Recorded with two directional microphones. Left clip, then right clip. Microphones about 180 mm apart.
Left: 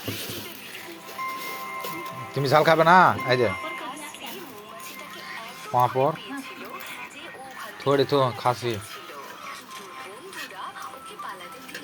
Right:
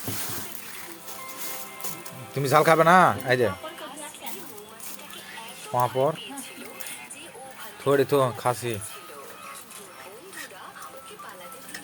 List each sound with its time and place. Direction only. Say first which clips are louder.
2.3 s speech: even; 20° right (ahead or behind)
5.7 s speech: left 2 dB; 10° right (ahead or behind)
7.9 s speech: even; 25° right (ahead or behind)